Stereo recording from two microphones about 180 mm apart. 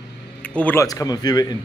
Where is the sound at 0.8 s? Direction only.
20° left (ahead or behind).